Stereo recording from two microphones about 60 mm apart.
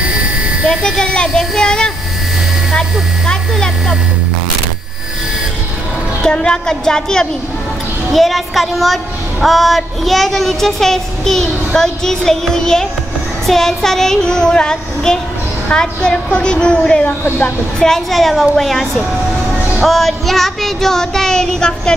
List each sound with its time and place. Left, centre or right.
0.7 s a child's voice: centre
3.3 s child singing: centre
6.2 s child singing: centre
8.1 s a woman's voice: centre
13.5 s child singing: centre
17.0 s speech: left
17.7 s a woman's voice: centre
19.8 s child singing: centre